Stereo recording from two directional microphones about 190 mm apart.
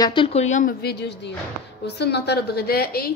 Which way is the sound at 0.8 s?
60° left (ahead or behind).